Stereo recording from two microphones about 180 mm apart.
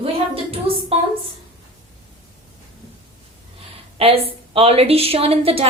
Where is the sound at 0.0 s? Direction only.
30° right (ahead or behind).